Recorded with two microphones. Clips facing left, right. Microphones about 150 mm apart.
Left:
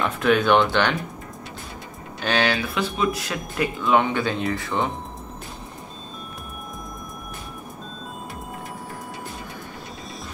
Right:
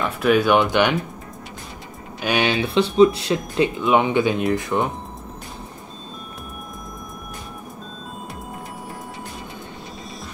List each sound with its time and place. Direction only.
0.0 s speech: 5° right (ahead or behind)
2.2 s speech: 20° right (ahead or behind)